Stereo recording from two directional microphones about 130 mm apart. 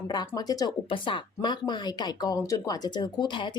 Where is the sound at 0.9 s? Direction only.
40° left (ahead or behind).